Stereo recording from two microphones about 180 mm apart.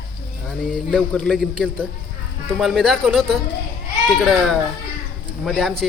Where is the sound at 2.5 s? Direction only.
Centre (ahead or behind).